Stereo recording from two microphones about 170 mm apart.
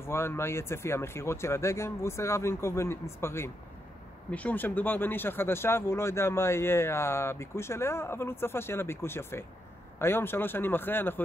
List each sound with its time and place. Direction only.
0.0 s speech: 15° left (ahead or behind)